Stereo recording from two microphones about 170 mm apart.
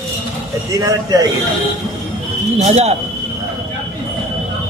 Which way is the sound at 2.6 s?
40° right (ahead or behind).